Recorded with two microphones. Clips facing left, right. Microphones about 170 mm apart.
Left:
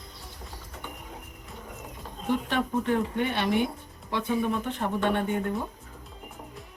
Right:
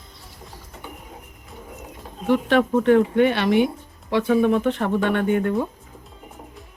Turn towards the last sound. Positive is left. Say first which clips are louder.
# right 7 dB
turn(degrees=-85)